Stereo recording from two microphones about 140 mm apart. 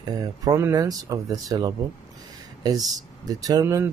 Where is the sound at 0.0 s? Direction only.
25° right (ahead or behind).